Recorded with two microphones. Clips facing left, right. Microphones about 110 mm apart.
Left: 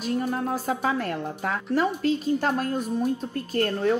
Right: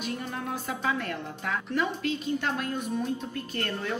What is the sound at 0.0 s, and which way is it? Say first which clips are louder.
A woman's voice: left 7 dB; 40° left (ahead or behind).